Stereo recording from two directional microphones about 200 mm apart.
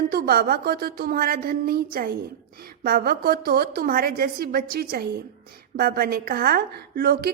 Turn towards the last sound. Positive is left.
turn(degrees=-50)  # may be behind; listen again after turning